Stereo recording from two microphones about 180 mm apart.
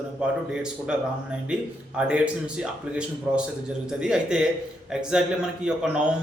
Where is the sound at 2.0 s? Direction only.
5° right (ahead or behind).